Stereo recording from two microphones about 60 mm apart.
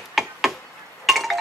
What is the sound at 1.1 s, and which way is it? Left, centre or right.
Chink, centre.